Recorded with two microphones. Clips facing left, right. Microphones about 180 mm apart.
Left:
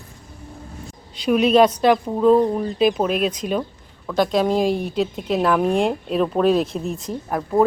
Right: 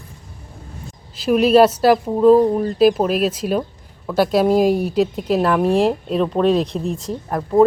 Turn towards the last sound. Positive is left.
turn(degrees=0)  # may be behind; listen again after turning